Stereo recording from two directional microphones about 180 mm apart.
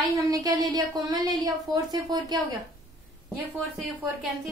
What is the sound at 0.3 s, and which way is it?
A woman's voice, 20° right (ahead or behind).